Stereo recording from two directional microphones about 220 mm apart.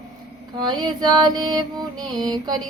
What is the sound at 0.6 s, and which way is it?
Female singing, 20° right (ahead or behind).